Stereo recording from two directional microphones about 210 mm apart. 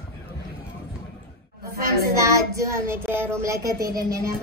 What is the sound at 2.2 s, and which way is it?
Child singing, 15° right (ahead or behind).